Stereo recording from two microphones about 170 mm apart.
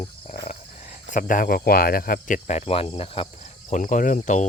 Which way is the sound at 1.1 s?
55° left (ahead or behind).